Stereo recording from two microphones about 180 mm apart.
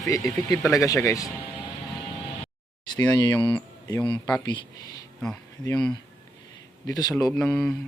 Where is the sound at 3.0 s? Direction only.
20° left (ahead or behind).